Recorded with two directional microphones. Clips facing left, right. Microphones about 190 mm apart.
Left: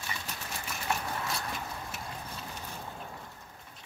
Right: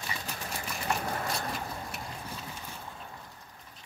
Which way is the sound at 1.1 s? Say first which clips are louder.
Right 2 dB; 40° right (ahead or behind).